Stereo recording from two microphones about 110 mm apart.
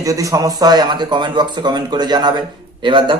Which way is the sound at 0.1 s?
30° right (ahead or behind).